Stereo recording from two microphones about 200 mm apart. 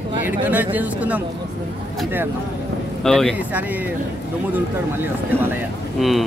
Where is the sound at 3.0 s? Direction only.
Centre (ahead or behind).